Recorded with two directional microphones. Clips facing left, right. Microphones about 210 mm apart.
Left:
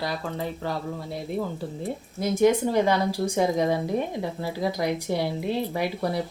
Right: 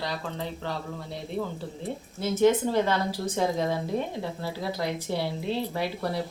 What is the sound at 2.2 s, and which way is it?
Speech, 15° left (ahead or behind).